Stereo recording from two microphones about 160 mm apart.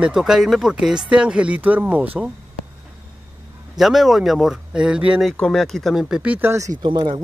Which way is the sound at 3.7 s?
Centre (ahead or behind).